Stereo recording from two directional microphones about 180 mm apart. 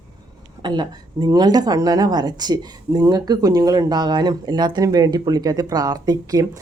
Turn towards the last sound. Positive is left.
turn(degrees=-20)  # may be behind; listen again after turning